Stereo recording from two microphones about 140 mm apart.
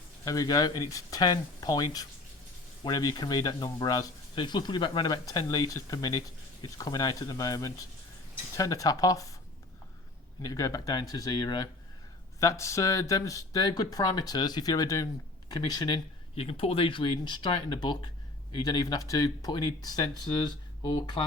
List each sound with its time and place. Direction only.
0.3 s speech: 25° left (ahead or behind)
10.4 s speech: 25° left (ahead or behind)
16.3 s speech: 45° left (ahead or behind)